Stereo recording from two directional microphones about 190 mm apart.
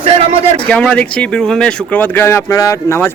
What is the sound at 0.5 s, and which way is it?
Speech, 5° left (ahead or behind).